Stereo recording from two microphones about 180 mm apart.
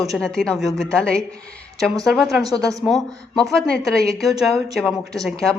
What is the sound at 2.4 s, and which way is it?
Speech, 20° right (ahead or behind).